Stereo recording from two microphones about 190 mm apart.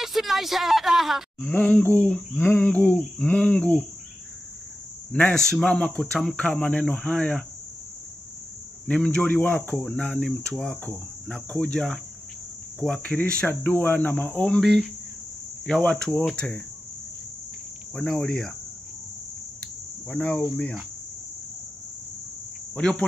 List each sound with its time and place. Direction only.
0.0 s speech: centre (ahead or behind)
5.1 s speech: 5° left (ahead or behind)
8.8 s cricket: 5° left (ahead or behind)
9.8 s speech: 5° left (ahead or behind)
12.8 s cricket: 5° left (ahead or behind)
15.6 s speech: 5° left (ahead or behind)
17.9 s speech: 5° left (ahead or behind)
20.1 s cricket: 5° left (ahead or behind)
22.8 s speech: 5° left (ahead or behind)